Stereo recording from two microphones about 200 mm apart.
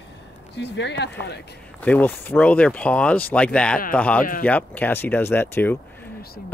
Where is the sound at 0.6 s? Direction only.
60° left (ahead or behind).